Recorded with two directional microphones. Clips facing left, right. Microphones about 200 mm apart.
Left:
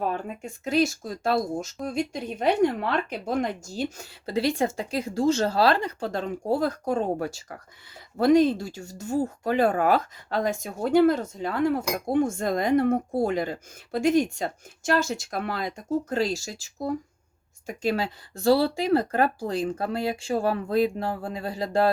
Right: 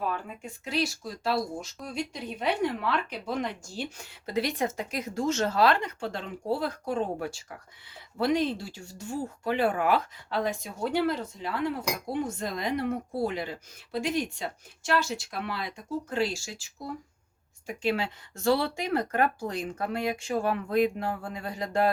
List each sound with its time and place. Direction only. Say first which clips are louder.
0.1 s speech: left 4 dB; 45° left (ahead or behind)
3.9 s speech: left 2 dB; 30° left (ahead or behind)